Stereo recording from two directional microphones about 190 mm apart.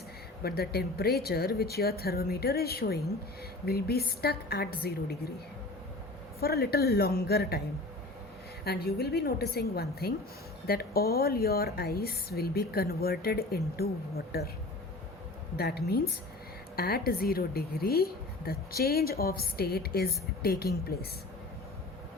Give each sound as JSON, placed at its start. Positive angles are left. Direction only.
{"t": 0.4, "sound": "speech", "side_deg": 55}
{"t": 6.4, "sound": "speech", "side_deg": 55}
{"t": 8.6, "sound": "a woman's voice", "side_deg": 55}
{"t": 15.5, "sound": "a woman's voice", "side_deg": 55}